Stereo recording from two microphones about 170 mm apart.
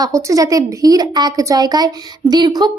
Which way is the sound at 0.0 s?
20° right (ahead or behind).